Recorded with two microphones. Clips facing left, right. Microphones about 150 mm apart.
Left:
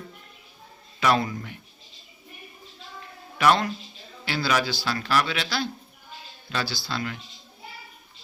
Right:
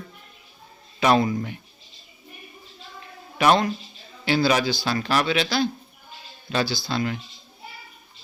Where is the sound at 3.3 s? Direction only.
20° right (ahead or behind).